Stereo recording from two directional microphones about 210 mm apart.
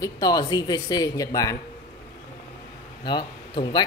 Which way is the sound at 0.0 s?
20° left (ahead or behind).